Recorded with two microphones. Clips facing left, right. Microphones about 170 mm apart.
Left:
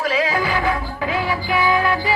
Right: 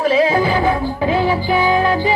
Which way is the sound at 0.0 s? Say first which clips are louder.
Right 6 dB; 30° right (ahead or behind).